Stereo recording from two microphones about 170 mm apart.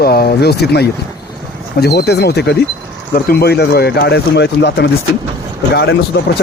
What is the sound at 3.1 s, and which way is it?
Speech, 65° left (ahead or behind).